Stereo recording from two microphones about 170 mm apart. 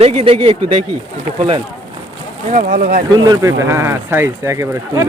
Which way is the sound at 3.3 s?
20° right (ahead or behind).